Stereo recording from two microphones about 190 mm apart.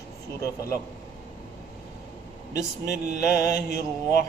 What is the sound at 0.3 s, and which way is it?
Speech, 15° left (ahead or behind).